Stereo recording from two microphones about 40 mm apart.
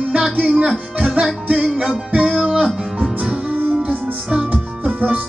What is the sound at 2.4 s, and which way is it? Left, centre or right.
Music, centre.